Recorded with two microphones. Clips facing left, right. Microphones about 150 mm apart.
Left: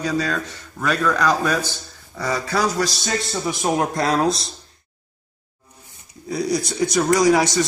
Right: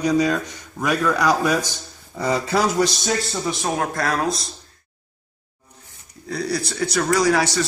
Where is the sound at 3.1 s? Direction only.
Centre (ahead or behind).